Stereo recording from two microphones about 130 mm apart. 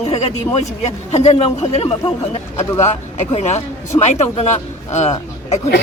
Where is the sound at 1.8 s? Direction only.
40° left (ahead or behind).